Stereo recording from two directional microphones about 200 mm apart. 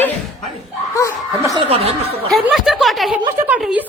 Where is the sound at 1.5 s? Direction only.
30° right (ahead or behind).